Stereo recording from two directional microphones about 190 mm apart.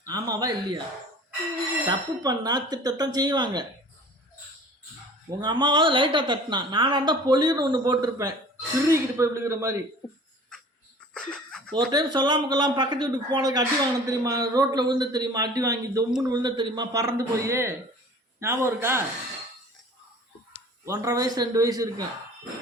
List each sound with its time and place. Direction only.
0.0 s speech: 20° right (ahead or behind)
1.9 s a woman's voice: 20° right (ahead or behind)
5.3 s a woman's voice: 20° right (ahead or behind)
11.1 s a sound: 5° left (ahead or behind)
11.9 s a woman's voice: 20° right (ahead or behind)
20.8 s speech: 15° right (ahead or behind)